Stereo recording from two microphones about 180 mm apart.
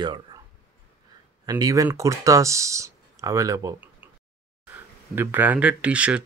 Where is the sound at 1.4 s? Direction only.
20° right (ahead or behind).